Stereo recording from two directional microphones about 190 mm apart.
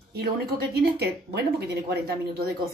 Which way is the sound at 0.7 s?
60° right (ahead or behind).